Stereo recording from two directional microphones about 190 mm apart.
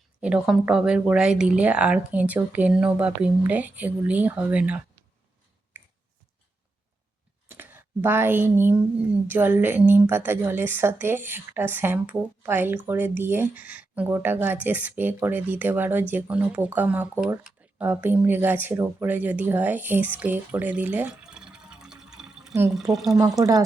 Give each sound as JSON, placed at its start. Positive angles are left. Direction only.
{"t": 0.2, "sound": "a woman's voice", "side_deg": -5}
{"t": 5.7, "sound": "finger snapping", "side_deg": -10}
{"t": 7.4, "sound": "a sound", "side_deg": -10}
{"t": 9.2, "sound": "a woman's voice", "side_deg": -10}
{"t": 23.4, "sound": "speech", "side_deg": -20}